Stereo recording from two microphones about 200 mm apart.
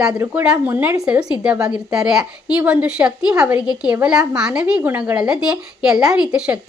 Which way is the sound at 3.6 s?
20° left (ahead or behind).